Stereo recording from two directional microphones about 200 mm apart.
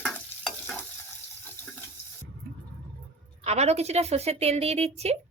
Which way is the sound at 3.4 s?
30° right (ahead or behind).